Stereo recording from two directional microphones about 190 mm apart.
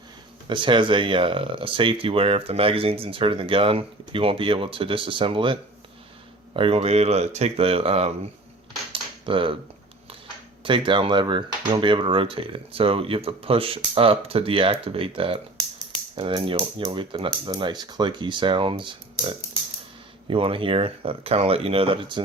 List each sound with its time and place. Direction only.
0.4 s speech: 25° right (ahead or behind)
8.9 s cutlery: 25° right (ahead or behind)
10.6 s speech: 25° right (ahead or behind)